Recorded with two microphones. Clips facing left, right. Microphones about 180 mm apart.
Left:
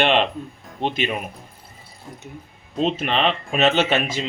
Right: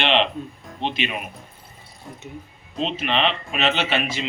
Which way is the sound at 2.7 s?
45° left (ahead or behind).